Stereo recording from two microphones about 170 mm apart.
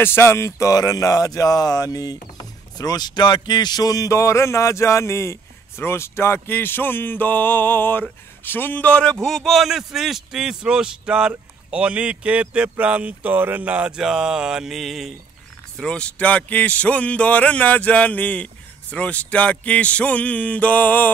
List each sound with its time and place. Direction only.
0.0 s a man's voice: 15° left (ahead or behind)